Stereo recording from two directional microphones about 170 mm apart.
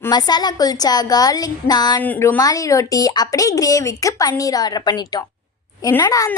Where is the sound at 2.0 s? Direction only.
10° left (ahead or behind).